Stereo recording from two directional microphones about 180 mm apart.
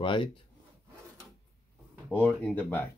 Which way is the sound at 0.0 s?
25° left (ahead or behind).